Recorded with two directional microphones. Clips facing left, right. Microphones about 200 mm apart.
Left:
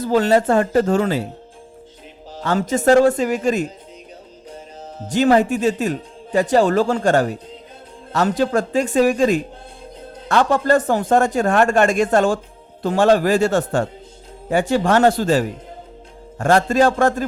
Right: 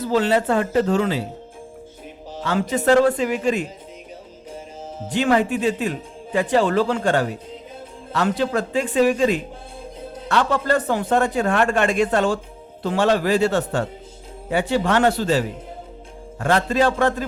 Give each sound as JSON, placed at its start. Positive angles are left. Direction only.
{"t": 0.0, "sound": "a man's voice", "side_deg": 45}
{"t": 2.4, "sound": "a man's voice", "side_deg": 45}
{"t": 5.1, "sound": "a man's voice", "side_deg": 40}